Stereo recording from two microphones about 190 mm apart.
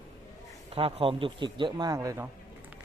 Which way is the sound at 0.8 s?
30° right (ahead or behind).